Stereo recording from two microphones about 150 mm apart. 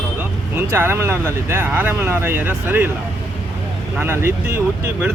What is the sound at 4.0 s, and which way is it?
Speech, 15° right (ahead or behind).